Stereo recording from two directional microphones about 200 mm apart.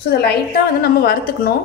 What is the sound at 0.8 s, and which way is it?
Speech, 50° left (ahead or behind).